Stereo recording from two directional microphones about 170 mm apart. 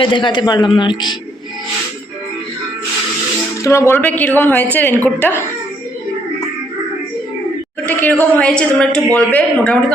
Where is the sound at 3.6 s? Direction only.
15° left (ahead or behind).